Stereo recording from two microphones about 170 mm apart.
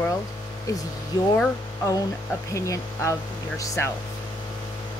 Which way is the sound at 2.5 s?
20° left (ahead or behind).